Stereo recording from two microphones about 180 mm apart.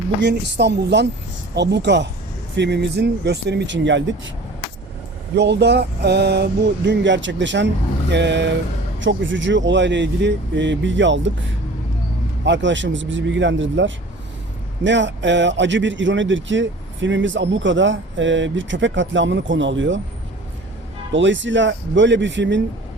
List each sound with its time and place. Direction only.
0.2 s speech: 75° right (ahead or behind)
5.3 s speech: 70° right (ahead or behind)
9.0 s speech: 90° right
12.5 s speech: 90° right
21.1 s speech: 90° right